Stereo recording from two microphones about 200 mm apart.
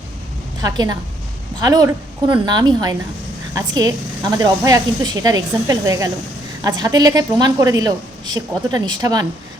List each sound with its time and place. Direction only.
0.6 s a woman's voice: 20° right (ahead or behind)